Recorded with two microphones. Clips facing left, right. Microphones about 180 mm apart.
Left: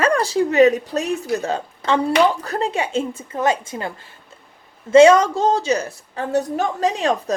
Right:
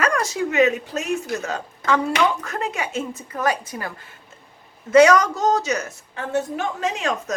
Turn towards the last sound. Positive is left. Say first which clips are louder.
# left 5 dB
turn(degrees=35)  # may be behind; listen again after turning